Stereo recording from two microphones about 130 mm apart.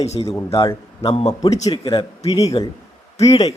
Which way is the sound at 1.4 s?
30° left (ahead or behind).